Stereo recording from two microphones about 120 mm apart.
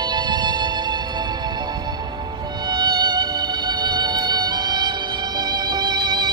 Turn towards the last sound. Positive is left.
turn(degrees=-35)  # may be behind; listen again after turning